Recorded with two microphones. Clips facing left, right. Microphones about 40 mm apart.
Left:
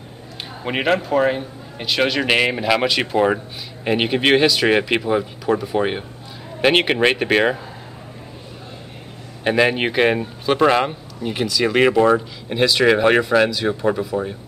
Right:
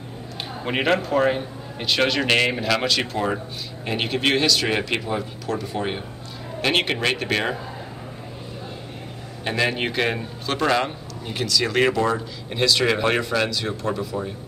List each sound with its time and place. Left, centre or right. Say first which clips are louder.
0.7 s a man's voice: left 2 dB; centre; by 7.5 s left
9.4 s speech: left 6 dB; centre